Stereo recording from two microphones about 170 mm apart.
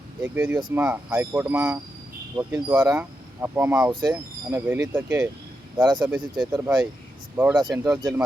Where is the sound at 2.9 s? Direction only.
10° right (ahead or behind).